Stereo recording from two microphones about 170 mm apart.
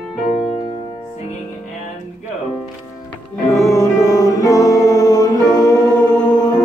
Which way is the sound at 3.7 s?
20° left (ahead or behind).